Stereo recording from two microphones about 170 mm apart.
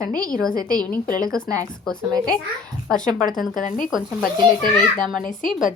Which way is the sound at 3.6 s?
50° left (ahead or behind).